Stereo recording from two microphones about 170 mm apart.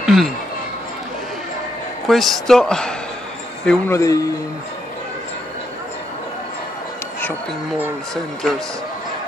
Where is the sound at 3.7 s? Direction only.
15° left (ahead or behind).